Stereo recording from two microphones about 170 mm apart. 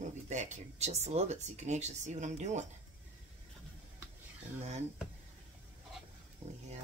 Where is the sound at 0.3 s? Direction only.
45° right (ahead or behind).